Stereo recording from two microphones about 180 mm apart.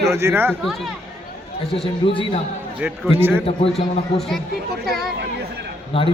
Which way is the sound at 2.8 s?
10° right (ahead or behind).